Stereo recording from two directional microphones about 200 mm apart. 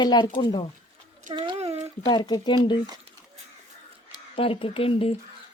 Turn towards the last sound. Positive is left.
turn(degrees=30)  # may be behind; listen again after turning